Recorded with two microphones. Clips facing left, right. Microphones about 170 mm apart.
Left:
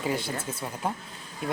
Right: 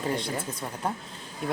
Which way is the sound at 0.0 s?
5° left (ahead or behind).